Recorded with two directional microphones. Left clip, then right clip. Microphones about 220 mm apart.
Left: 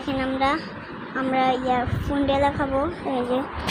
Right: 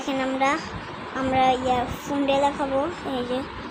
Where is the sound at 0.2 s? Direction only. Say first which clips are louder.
Even; 10° right (ahead or behind).